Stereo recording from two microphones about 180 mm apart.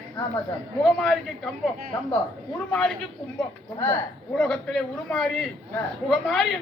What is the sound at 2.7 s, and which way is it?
Speech, 5° left (ahead or behind).